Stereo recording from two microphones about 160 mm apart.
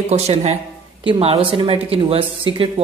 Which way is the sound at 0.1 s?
40° right (ahead or behind).